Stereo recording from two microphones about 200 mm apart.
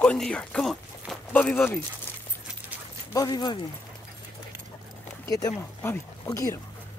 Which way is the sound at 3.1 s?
20° left (ahead or behind).